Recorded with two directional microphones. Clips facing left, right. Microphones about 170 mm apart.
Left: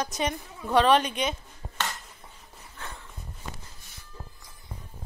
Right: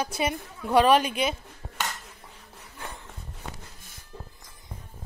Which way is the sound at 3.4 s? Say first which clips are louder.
Right 1 dB; 65° right (ahead or behind).